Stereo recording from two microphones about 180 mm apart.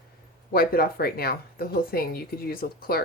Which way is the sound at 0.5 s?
55° left (ahead or behind).